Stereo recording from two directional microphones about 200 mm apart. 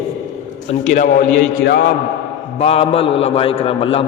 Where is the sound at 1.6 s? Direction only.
55° left (ahead or behind).